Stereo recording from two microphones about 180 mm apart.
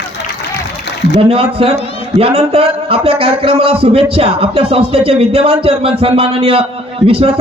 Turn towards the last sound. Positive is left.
turn(degrees=-30)  # may be behind; listen again after turning